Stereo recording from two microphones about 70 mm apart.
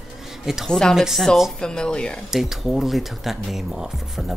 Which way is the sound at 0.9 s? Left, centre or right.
Centre.